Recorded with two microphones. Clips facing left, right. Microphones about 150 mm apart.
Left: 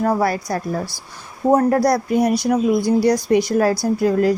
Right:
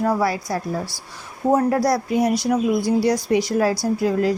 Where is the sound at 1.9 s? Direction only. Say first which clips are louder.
Left 2 dB; 50° left (ahead or behind).